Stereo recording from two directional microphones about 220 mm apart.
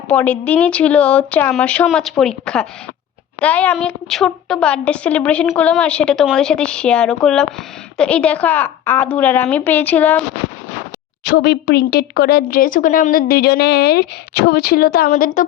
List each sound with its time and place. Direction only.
0.1 s a woman's voice: 5° left (ahead or behind)
11.2 s speech: 50° left (ahead or behind)